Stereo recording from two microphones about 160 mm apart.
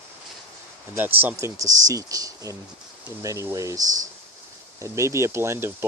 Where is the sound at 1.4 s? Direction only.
20° right (ahead or behind).